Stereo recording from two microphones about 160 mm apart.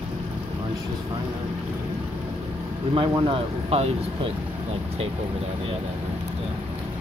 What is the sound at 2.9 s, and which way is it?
Speech, 30° right (ahead or behind).